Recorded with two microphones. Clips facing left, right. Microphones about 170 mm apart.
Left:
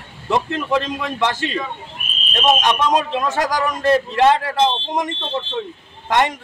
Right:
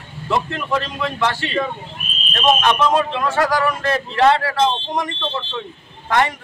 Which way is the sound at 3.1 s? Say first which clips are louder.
Right 1 dB; 20° left (ahead or behind).